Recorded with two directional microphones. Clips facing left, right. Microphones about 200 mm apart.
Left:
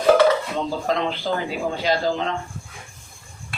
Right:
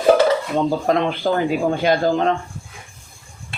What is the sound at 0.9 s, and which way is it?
A man's voice, 50° right (ahead or behind).